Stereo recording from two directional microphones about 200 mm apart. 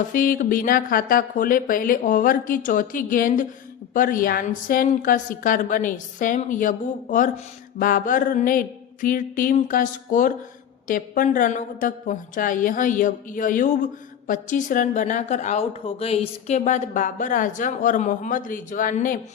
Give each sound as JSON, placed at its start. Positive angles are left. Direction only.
{"t": 0.0, "sound": "a woman's voice", "side_deg": 40}